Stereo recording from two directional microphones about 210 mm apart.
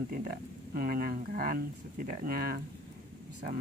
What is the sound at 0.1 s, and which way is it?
Speech, 40° right (ahead or behind).